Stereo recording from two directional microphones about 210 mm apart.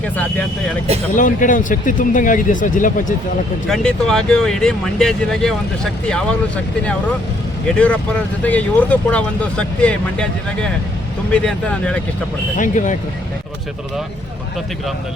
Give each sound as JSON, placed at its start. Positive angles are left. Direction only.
{"t": 0.0, "sound": "speech", "side_deg": 5}
{"t": 1.1, "sound": "speech", "side_deg": 40}
{"t": 3.7, "sound": "speech", "side_deg": 5}
{"t": 8.4, "sound": "speech", "side_deg": 5}
{"t": 12.5, "sound": "speech", "side_deg": 40}